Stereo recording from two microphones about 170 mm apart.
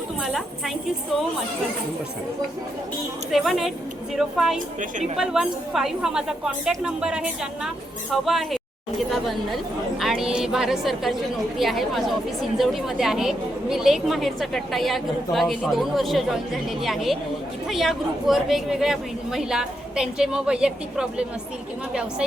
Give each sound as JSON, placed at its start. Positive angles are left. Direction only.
{"t": 0.2, "sound": "a woman's voice", "side_deg": 0}
{"t": 3.3, "sound": "a woman's voice", "side_deg": 0}
{"t": 4.8, "sound": "a woman's voice", "side_deg": -50}
{"t": 5.1, "sound": "a woman's voice", "side_deg": -5}